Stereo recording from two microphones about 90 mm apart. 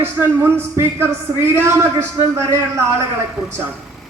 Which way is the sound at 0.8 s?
25° right (ahead or behind).